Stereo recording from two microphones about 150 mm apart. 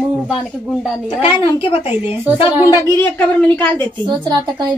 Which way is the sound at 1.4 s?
35° left (ahead or behind).